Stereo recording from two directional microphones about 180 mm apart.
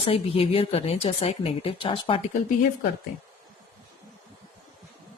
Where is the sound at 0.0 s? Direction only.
30° left (ahead or behind).